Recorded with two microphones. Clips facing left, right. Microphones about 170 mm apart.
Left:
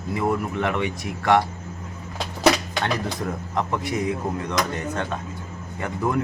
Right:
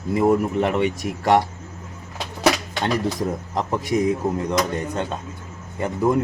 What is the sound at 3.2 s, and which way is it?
Speech, 40° right (ahead or behind).